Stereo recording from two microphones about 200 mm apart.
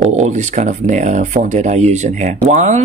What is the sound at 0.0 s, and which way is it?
Speech, 35° right (ahead or behind).